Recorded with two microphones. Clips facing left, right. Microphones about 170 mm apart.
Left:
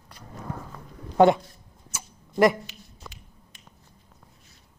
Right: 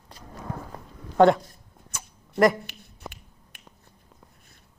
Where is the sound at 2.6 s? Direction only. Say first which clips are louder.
Right 4 dB; 60° right (ahead or behind).